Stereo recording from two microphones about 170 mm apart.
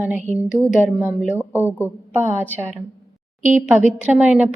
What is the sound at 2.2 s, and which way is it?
A woman's voice, 15° right (ahead or behind).